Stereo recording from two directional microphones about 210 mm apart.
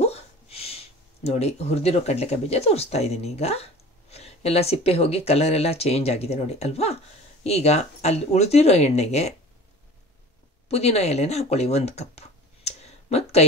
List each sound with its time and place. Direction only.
0.0 s speech: 30° left (ahead or behind)
10.7 s speech: 30° left (ahead or behind)